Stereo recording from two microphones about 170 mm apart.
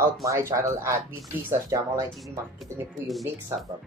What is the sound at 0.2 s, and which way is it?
Speech, 15° right (ahead or behind).